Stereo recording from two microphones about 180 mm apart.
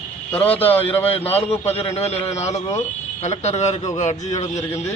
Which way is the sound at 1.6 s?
35° left (ahead or behind).